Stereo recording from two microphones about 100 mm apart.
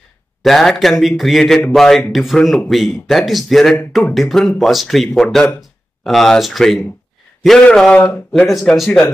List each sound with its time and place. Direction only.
0.4 s speech: centre (ahead or behind)